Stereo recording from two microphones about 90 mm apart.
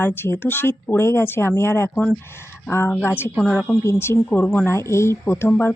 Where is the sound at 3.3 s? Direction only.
5° right (ahead or behind).